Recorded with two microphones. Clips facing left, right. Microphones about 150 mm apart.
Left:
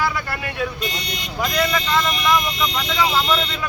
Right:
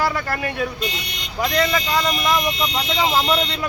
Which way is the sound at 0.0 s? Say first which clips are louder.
Right 2 dB; 40° right (ahead or behind).